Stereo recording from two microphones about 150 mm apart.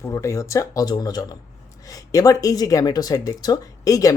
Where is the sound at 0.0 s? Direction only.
20° left (ahead or behind).